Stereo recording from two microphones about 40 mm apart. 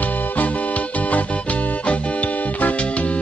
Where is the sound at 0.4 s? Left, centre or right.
Left.